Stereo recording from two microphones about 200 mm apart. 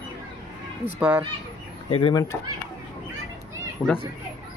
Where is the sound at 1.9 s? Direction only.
25° left (ahead or behind).